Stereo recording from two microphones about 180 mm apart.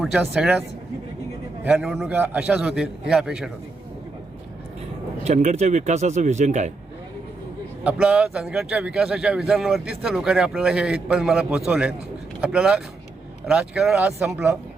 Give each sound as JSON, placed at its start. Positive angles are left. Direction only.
{"t": 0.0, "sound": "a man's voice", "side_deg": 0}
{"t": 1.6, "sound": "a man's voice", "side_deg": -5}
{"t": 5.2, "sound": "speech", "side_deg": -35}
{"t": 8.0, "sound": "a man's voice", "side_deg": -5}